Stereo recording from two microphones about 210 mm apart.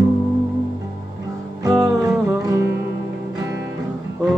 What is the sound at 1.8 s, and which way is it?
Music, 15° right (ahead or behind).